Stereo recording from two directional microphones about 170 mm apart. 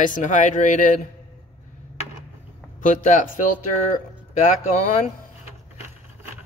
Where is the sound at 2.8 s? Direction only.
50° left (ahead or behind).